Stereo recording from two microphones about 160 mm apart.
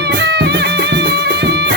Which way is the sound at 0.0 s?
90° right.